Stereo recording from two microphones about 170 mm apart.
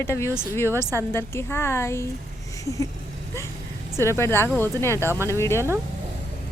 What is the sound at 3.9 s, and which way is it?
Speech, 15° left (ahead or behind).